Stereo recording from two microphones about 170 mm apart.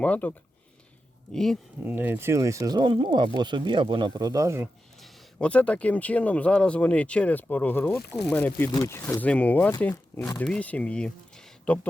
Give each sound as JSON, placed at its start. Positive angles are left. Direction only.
{"t": 0.0, "sound": "speech", "side_deg": 10}
{"t": 1.8, "sound": "speech", "side_deg": -10}
{"t": 5.4, "sound": "speech", "side_deg": 5}